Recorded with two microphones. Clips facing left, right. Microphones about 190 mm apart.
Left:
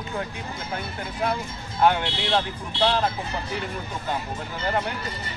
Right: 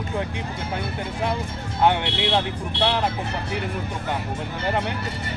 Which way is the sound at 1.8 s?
20° right (ahead or behind).